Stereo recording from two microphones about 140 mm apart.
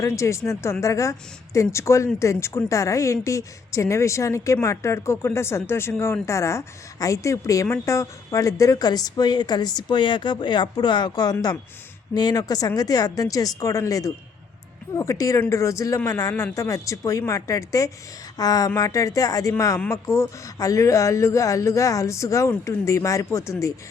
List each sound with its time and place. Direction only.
0.0 s a woman's voice: 20° left (ahead or behind)